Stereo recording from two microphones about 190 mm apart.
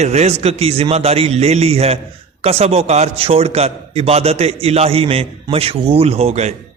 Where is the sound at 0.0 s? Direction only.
35° right (ahead or behind).